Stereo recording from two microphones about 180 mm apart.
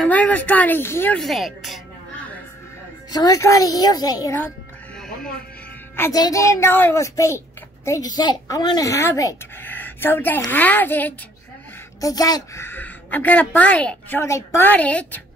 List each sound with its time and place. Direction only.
0.0 s a child's voice: 10° left (ahead or behind)
3.1 s a woman's voice: 20° left (ahead or behind)
5.9 s a child's voice: 20° left (ahead or behind)